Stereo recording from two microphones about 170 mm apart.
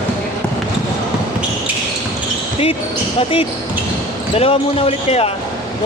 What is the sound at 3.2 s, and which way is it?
Speech, 35° left (ahead or behind).